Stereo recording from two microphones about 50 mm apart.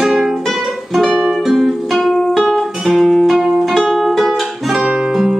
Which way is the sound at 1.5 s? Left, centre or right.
Centre.